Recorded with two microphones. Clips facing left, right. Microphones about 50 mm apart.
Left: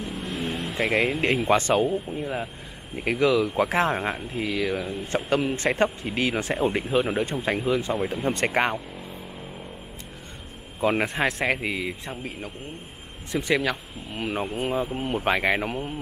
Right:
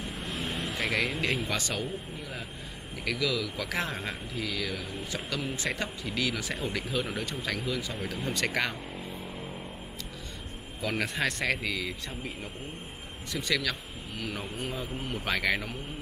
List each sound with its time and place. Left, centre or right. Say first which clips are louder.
0.0 s vehicle: left 5 dB; centre
0.7 s speech: left 7 dB; left
10.8 s a man's voice: left 8 dB; left
11.1 s speech: left 5 dB; centre; by 15.9 s left